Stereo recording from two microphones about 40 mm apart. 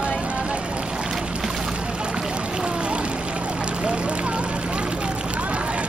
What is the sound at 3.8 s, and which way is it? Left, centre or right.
Vehicle, right.